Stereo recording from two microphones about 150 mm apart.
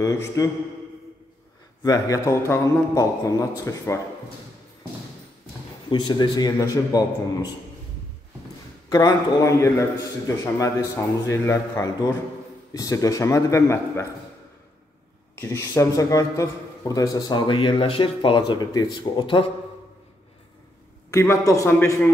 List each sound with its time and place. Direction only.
0.0 s a man's voice: 20° left (ahead or behind)
1.9 s a man's voice: 20° left (ahead or behind)
5.9 s a man's voice: 30° left (ahead or behind)
8.8 s a man's voice: 25° left (ahead or behind)
15.4 s a man's voice: 20° left (ahead or behind)
21.1 s a man's voice: 20° left (ahead or behind)